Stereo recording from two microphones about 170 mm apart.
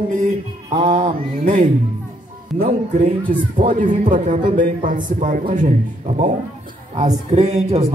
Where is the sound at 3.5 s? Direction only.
50° right (ahead or behind).